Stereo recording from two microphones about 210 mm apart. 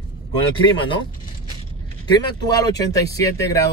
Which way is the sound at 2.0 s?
20° left (ahead or behind).